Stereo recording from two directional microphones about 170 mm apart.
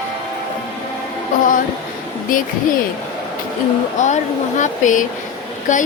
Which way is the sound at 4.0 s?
45° left (ahead or behind).